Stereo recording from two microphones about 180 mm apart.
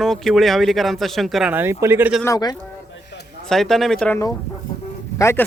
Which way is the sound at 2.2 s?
20° left (ahead or behind).